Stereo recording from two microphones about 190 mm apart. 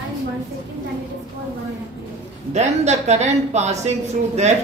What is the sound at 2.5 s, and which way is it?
A woman's voice, 35° right (ahead or behind).